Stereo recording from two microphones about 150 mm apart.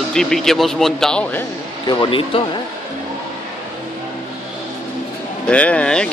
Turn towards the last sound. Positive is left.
turn(degrees=5)  # may be behind; listen again after turning